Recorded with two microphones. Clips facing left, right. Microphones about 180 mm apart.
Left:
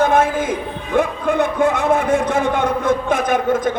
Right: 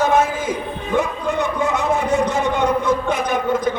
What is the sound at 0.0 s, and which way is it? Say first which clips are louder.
Music: left 2 dB; 55° left (ahead or behind).